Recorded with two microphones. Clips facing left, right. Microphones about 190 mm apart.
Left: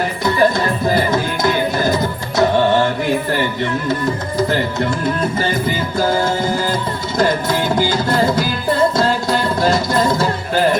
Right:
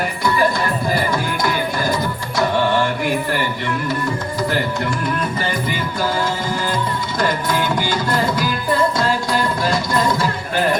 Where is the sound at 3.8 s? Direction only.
20° left (ahead or behind).